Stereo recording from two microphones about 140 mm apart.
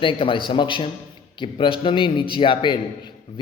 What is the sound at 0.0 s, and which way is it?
A man's voice, 40° left (ahead or behind).